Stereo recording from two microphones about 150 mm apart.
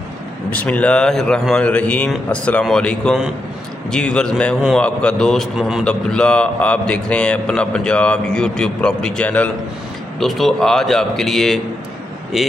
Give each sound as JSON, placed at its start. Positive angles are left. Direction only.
{"t": 0.5, "sound": "a man's voice", "side_deg": 10}
{"t": 5.9, "sound": "a man's voice", "side_deg": 5}